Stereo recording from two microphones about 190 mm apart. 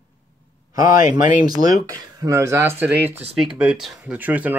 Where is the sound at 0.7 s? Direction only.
15° right (ahead or behind).